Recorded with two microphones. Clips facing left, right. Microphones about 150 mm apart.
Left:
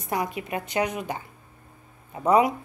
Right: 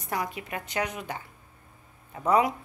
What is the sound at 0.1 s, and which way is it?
Speech, 20° left (ahead or behind).